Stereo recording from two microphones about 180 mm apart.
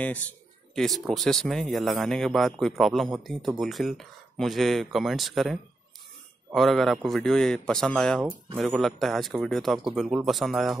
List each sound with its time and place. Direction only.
0.7 s speech: centre (ahead or behind)